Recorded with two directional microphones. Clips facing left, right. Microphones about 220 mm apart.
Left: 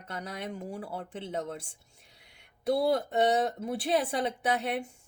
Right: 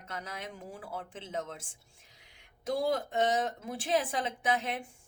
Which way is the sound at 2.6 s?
40° left (ahead or behind).